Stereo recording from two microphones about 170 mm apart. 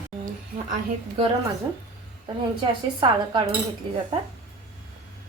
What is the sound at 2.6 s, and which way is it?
Speech, 30° right (ahead or behind).